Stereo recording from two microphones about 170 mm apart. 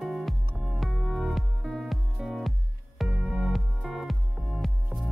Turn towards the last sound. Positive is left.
turn(degrees=0)  # may be behind; listen again after turning